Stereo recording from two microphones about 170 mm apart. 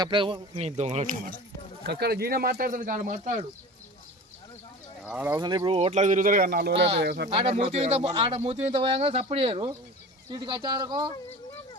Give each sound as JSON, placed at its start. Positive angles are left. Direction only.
{"t": 0.0, "sound": "speech", "side_deg": -30}
{"t": 0.8, "sound": "speech", "side_deg": -40}
{"t": 1.9, "sound": "speech", "side_deg": -70}
{"t": 5.0, "sound": "speech", "side_deg": -10}
{"t": 5.4, "sound": "speech", "side_deg": -25}
{"t": 7.3, "sound": "speech", "side_deg": -35}